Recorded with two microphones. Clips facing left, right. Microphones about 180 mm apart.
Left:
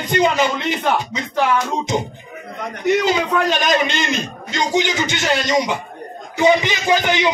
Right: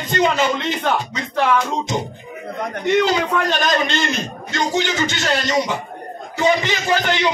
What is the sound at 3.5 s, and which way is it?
A man's voice, 15° left (ahead or behind).